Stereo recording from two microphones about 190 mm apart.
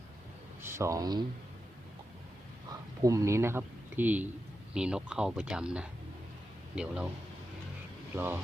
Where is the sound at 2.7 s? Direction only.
15° right (ahead or behind).